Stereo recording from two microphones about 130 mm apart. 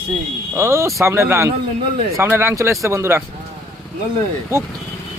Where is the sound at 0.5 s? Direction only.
20° right (ahead or behind).